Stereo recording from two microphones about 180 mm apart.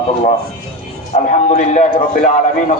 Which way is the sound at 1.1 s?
40° left (ahead or behind).